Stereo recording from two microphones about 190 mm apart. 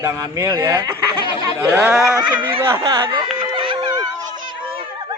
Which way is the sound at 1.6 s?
10° right (ahead or behind).